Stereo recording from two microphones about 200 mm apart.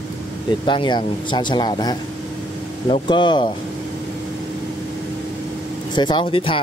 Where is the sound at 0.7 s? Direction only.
25° left (ahead or behind).